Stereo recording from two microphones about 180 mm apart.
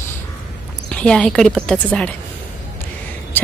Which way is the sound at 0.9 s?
5° left (ahead or behind).